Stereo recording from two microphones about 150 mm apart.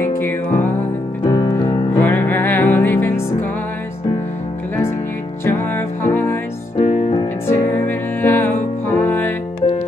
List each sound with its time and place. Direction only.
0.0 s music: 15° left (ahead or behind)
1.2 s piano: 30° left (ahead or behind)
2.0 s music: 15° left (ahead or behind)
5.4 s music: 15° left (ahead or behind)
6.8 s music: 40° left (ahead or behind)
7.4 s music: 15° left (ahead or behind)